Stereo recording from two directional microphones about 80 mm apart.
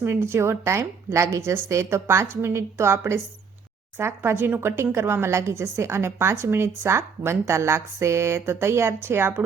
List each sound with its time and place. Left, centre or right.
0.0 s a woman's voice: right